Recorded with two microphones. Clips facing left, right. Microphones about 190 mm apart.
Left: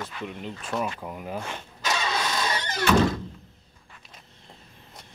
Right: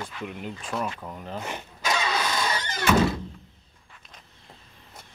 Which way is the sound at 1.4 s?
10° right (ahead or behind).